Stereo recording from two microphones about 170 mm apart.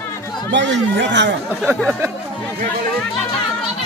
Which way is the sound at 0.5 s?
90° right.